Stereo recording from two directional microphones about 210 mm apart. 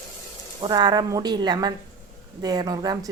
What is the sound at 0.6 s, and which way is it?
Frying, 20° right (ahead or behind).